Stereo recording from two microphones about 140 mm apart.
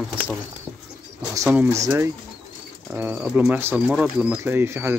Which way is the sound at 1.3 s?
20° right (ahead or behind).